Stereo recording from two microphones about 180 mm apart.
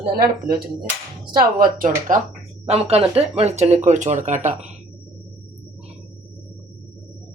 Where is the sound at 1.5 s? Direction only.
50° right (ahead or behind).